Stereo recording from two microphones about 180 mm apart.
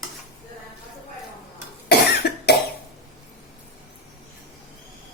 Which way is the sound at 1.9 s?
65° left (ahead or behind).